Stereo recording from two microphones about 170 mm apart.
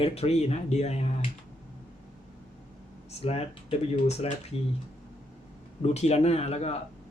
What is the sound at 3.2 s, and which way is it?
Speech, 35° left (ahead or behind).